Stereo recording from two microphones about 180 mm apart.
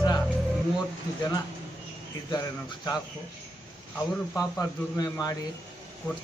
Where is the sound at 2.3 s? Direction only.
20° left (ahead or behind).